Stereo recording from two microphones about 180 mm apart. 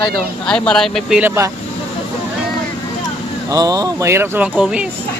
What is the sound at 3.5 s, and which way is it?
Speech, 20° right (ahead or behind).